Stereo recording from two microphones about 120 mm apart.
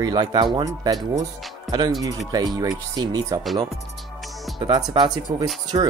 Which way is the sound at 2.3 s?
30° right (ahead or behind).